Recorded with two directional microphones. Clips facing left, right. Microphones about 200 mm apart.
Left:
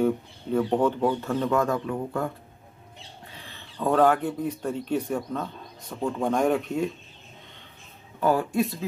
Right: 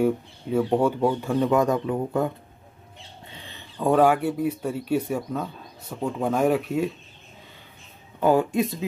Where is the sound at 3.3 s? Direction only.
20° right (ahead or behind).